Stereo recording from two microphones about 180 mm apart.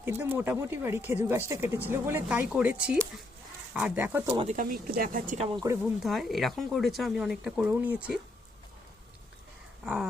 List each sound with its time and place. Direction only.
0.0 s speech: 15° right (ahead or behind)
4.4 s speech: 45° right (ahead or behind)
6.0 s speech: centre (ahead or behind)
9.8 s a sound: 5° right (ahead or behind)